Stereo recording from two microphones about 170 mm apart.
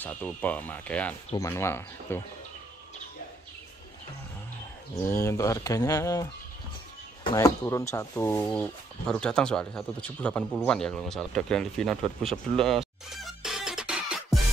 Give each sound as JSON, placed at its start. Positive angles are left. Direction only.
{"t": 0.0, "sound": "speech", "side_deg": 10}
{"t": 5.0, "sound": "speech", "side_deg": 15}
{"t": 7.3, "sound": "speech", "side_deg": 20}
{"t": 12.3, "sound": "music", "side_deg": 0}